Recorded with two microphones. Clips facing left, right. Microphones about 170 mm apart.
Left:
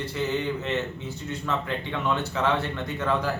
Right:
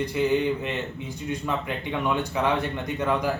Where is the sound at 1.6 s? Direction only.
15° right (ahead or behind).